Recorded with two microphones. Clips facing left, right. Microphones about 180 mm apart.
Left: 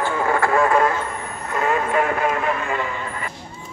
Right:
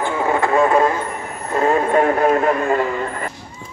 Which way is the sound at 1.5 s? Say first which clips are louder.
Right 5 dB; 35° right (ahead or behind).